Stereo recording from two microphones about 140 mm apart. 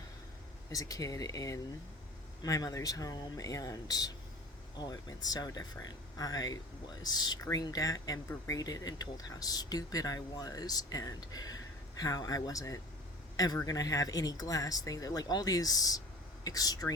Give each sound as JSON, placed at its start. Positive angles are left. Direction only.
{"t": 0.7, "sound": "a man's voice", "side_deg": 25}